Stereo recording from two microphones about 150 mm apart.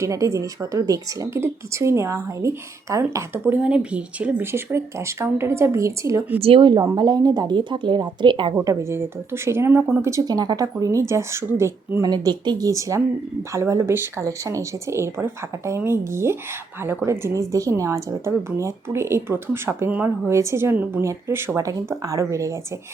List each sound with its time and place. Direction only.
0.0 s speech: 20° right (ahead or behind)
6.4 s speech: 35° right (ahead or behind)
8.5 s speech: 20° right (ahead or behind)
12.1 s speech: 30° right (ahead or behind)